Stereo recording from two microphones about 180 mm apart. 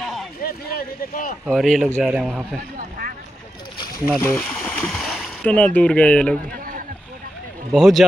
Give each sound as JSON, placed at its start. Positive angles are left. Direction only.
{"t": 0.0, "sound": "a sound", "side_deg": 0}
{"t": 0.4, "sound": "speech", "side_deg": 55}
{"t": 1.4, "sound": "a man's voice", "side_deg": 0}
{"t": 4.2, "sound": "speech", "side_deg": 10}
{"t": 7.7, "sound": "a man's voice", "side_deg": 0}